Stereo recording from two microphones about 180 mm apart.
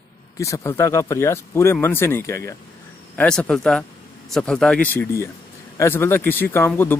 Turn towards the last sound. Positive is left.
turn(degrees=10)  # may be behind; listen again after turning